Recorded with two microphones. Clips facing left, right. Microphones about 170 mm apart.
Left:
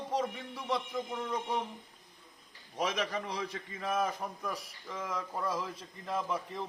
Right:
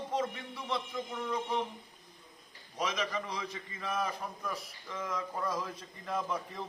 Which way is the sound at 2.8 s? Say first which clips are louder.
Left 1 dB; 55° left (ahead or behind).